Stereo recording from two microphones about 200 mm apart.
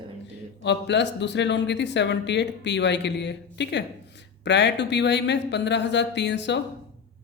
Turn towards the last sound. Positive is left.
turn(degrees=60)  # may be behind; listen again after turning